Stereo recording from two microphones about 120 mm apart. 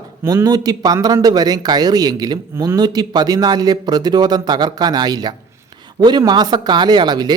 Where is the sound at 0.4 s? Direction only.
35° right (ahead or behind).